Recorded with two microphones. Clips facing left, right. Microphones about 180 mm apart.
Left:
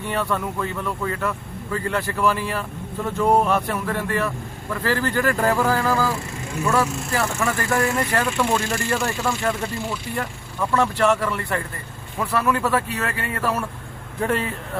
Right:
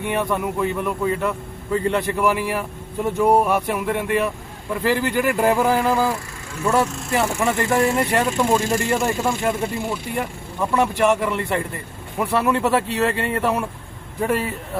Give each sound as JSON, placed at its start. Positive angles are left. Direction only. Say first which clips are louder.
{"t": 0.0, "sound": "speech", "louder": "right 2 dB", "side_deg": -15}
{"t": 8.5, "sound": "speech", "louder": "right 3 dB", "side_deg": -15}
{"t": 14.2, "sound": "speech", "louder": "right 2 dB", "side_deg": -5}